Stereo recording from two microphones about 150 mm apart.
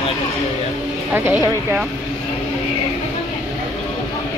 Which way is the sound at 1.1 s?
15° right (ahead or behind).